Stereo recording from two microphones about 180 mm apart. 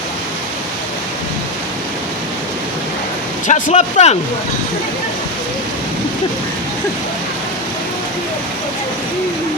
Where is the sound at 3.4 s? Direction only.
45° left (ahead or behind).